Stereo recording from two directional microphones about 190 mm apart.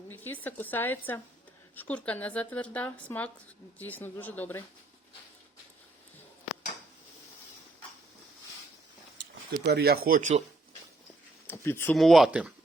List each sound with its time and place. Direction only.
0.1 s a woman's voice: 10° left (ahead or behind)
9.6 s speech: 60° right (ahead or behind); by 10.4 s 40° right (ahead or behind)
11.4 s a sound: 15° left (ahead or behind)
11.9 s speech: centre (ahead or behind)